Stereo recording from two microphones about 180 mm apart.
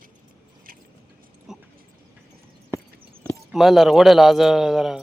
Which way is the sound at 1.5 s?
5° right (ahead or behind).